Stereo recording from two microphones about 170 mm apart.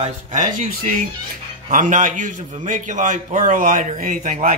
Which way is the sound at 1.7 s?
50° right (ahead or behind).